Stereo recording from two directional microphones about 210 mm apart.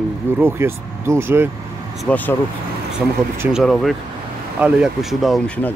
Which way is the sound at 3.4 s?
Centre (ahead or behind).